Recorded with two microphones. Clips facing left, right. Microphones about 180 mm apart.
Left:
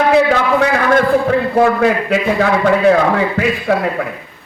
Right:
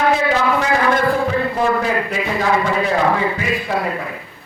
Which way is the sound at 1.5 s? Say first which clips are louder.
Left 6 dB; 65° left (ahead or behind).